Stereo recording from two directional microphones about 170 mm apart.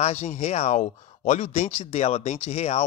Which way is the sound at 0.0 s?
40° left (ahead or behind).